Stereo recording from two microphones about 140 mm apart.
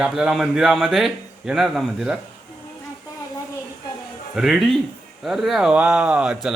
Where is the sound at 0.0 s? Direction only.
5° right (ahead or behind).